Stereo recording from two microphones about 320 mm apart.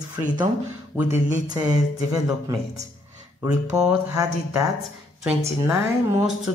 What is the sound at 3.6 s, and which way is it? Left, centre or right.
Speech, centre.